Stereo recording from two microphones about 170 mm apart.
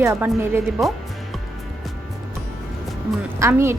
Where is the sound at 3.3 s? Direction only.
15° right (ahead or behind).